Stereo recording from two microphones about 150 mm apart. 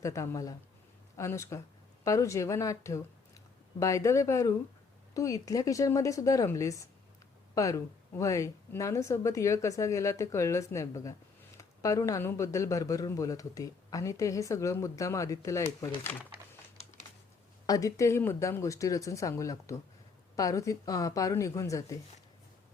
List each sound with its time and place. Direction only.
0.0 s speech: 20° left (ahead or behind)
17.7 s speech: 20° left (ahead or behind)